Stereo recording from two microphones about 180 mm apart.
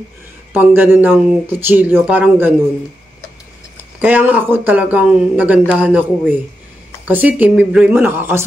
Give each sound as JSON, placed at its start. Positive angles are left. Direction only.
{"t": 0.5, "sound": "speech", "side_deg": -10}
{"t": 4.0, "sound": "speech", "side_deg": -10}